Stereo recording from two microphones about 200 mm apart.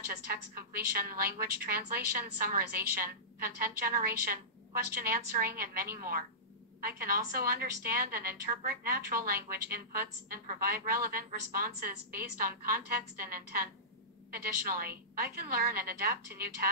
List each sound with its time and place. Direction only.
0.0 s a woman's voice: 50° right (ahead or behind)